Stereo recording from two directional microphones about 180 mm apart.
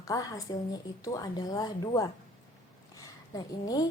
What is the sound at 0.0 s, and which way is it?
A woman's voice, 20° left (ahead or behind).